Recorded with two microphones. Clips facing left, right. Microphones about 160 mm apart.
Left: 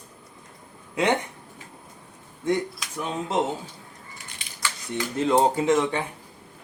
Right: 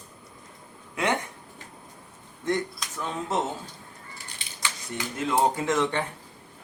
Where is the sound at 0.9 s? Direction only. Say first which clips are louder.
Left 4 dB; 20° left (ahead or behind).